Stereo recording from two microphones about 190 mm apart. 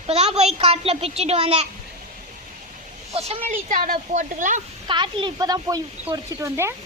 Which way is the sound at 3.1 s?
35° right (ahead or behind).